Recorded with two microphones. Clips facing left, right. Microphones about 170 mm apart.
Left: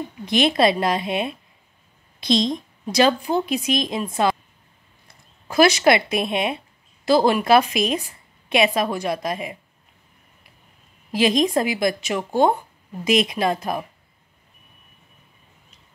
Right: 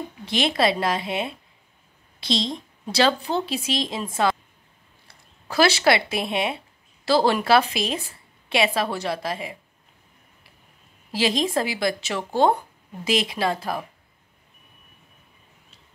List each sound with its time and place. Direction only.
0.2 s a woman's voice: 20° left (ahead or behind)
5.0 s a sound: 15° left (ahead or behind)
6.1 s a woman's voice: 20° left (ahead or behind)
11.1 s a woman's voice: 20° left (ahead or behind)